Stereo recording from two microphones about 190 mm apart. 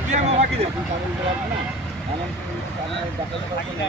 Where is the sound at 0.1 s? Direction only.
35° right (ahead or behind).